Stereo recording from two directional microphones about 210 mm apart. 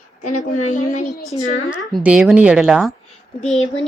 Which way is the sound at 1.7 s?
5° right (ahead or behind).